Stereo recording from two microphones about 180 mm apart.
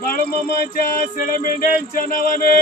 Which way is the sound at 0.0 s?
55° left (ahead or behind).